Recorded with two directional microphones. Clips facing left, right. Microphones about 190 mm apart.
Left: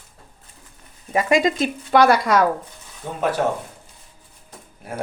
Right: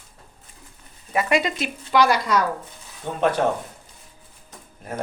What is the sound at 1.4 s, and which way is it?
Speech, 45° left (ahead or behind).